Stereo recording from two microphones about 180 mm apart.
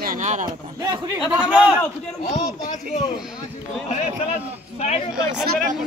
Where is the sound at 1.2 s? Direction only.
5° right (ahead or behind).